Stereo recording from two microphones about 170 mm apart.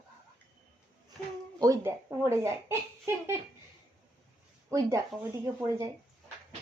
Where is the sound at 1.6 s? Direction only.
20° right (ahead or behind).